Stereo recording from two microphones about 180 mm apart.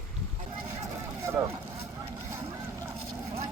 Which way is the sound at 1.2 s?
15° right (ahead or behind).